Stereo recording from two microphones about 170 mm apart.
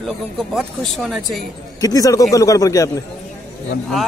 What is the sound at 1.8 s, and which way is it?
A man's voice, 20° left (ahead or behind).